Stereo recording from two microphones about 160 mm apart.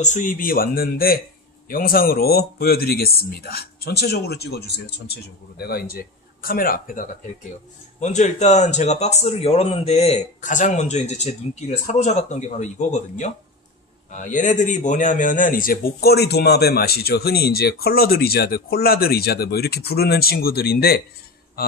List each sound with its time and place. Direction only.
0.0 s a man's voice: 55° left (ahead or behind)
8.0 s a man's voice: 45° left (ahead or behind); by 21.0 s 75° left (ahead or behind)